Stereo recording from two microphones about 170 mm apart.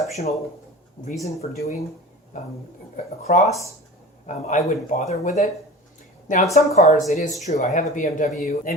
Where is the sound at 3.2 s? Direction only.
40° left (ahead or behind).